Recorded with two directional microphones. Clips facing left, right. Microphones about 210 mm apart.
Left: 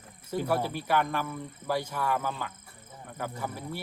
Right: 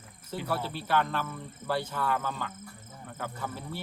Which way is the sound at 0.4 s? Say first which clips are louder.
Left 3 dB; 10° left (ahead or behind).